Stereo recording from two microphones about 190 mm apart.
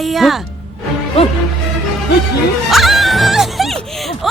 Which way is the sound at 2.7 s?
Centre (ahead or behind).